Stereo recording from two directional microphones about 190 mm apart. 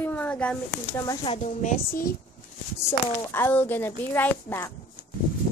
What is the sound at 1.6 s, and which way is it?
Speech, 40° left (ahead or behind).